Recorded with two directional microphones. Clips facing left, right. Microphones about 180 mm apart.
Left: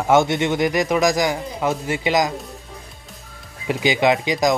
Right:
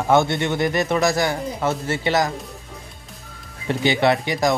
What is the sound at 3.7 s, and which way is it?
Speech, 15° left (ahead or behind).